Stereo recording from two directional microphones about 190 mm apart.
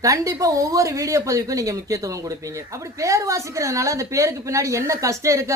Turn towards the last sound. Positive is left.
turn(degrees=-15)  # may be behind; listen again after turning